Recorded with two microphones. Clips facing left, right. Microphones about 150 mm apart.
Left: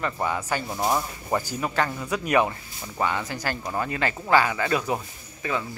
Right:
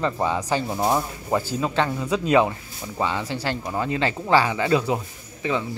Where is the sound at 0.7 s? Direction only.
5° right (ahead or behind).